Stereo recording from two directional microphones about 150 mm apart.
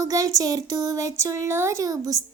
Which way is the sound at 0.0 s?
25° right (ahead or behind).